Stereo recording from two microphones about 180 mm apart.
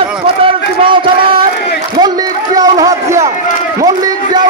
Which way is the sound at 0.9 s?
30° right (ahead or behind).